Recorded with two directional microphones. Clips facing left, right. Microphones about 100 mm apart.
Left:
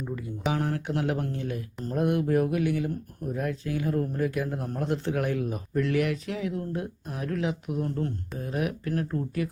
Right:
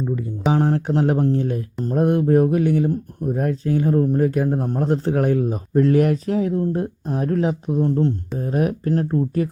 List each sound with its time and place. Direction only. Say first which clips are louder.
0.4 s a man's voice: right 9 dB; 30° right (ahead or behind)